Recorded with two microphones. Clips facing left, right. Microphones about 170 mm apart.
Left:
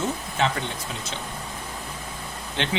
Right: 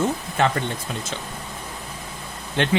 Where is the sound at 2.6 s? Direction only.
50° right (ahead or behind).